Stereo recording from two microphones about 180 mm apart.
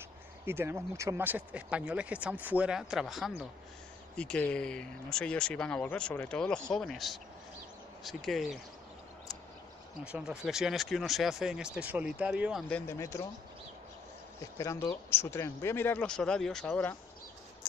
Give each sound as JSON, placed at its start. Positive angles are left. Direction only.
{"t": 0.5, "sound": "speech", "side_deg": -10}
{"t": 10.1, "sound": "speech", "side_deg": -5}
{"t": 12.6, "sound": "speech", "side_deg": 10}
{"t": 14.6, "sound": "speech", "side_deg": 15}